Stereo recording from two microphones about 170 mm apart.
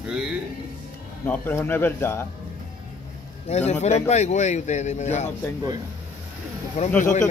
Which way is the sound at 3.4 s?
40° left (ahead or behind).